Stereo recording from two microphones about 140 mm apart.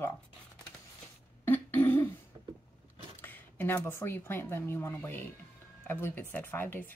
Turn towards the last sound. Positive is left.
turn(degrees=15)  # may be behind; listen again after turning